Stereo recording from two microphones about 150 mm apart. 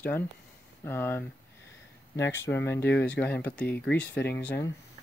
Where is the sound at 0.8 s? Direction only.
15° left (ahead or behind).